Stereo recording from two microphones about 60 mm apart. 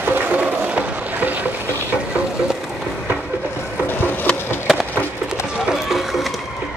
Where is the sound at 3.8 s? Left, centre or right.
Left.